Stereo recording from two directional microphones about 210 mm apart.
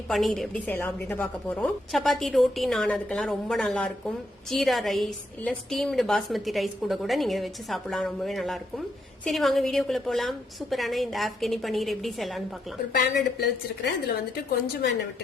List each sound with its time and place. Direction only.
0.1 s a woman's voice: centre (ahead or behind)
12.9 s speech: 50° left (ahead or behind)